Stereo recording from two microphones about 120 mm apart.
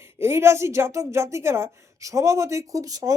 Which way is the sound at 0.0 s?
20° right (ahead or behind).